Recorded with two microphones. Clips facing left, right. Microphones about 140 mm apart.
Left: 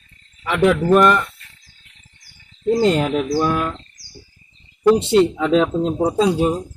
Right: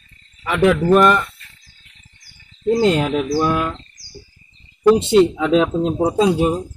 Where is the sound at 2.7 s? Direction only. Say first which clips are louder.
Even; centre (ahead or behind).